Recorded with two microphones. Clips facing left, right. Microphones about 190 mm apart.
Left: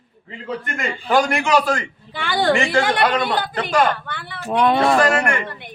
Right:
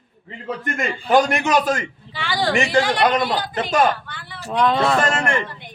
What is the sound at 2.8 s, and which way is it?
Speech, 55° left (ahead or behind).